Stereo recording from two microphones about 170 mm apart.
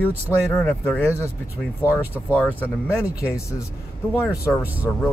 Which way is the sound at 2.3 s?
10° left (ahead or behind).